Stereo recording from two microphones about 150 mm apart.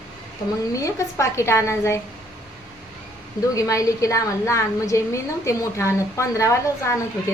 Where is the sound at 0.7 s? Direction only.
20° left (ahead or behind).